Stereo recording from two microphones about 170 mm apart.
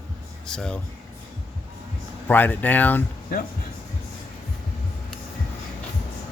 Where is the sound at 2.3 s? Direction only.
10° left (ahead or behind).